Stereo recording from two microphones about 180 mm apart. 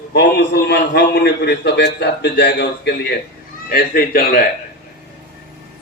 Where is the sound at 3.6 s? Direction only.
55° left (ahead or behind).